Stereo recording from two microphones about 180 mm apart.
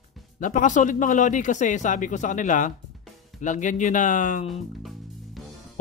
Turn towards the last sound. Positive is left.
turn(degrees=0)  # may be behind; listen again after turning